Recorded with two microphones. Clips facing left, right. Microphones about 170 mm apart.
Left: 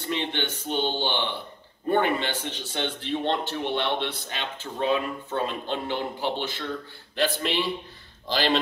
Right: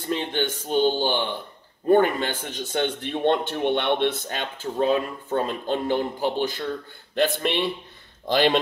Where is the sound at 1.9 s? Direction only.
45° right (ahead or behind).